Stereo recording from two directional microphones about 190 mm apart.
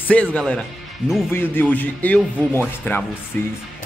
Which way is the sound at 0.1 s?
5° left (ahead or behind).